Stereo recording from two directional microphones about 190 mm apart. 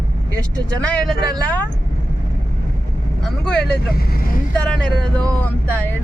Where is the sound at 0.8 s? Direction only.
5° left (ahead or behind).